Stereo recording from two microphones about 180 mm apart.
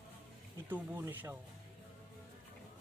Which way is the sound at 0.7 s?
10° right (ahead or behind).